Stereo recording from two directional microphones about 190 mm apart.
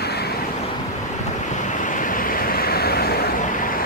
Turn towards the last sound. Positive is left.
turn(degrees=55)  # may be behind; listen again after turning